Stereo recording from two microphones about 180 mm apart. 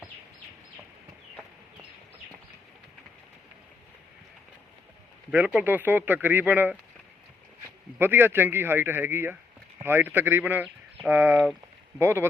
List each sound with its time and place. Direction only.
5.3 s speech: 10° right (ahead or behind)
7.9 s speech: 10° right (ahead or behind)